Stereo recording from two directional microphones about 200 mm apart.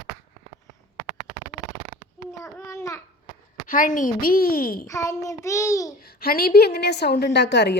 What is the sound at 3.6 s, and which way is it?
A woman's voice, 40° left (ahead or behind).